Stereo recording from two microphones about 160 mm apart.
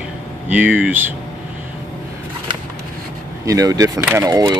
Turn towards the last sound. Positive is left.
turn(degrees=-25)  # may be behind; listen again after turning